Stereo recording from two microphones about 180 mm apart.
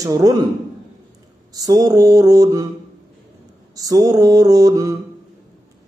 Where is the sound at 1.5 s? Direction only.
20° right (ahead or behind).